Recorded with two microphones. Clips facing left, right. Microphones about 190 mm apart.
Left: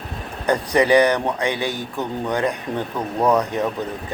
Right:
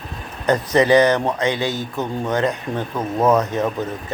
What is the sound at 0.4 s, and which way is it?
Speech, 15° left (ahead or behind).